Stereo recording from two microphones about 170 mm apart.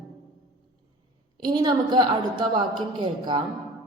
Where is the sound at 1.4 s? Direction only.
25° right (ahead or behind).